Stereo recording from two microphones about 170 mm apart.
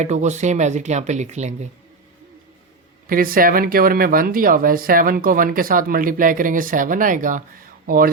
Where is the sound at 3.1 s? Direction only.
55° right (ahead or behind).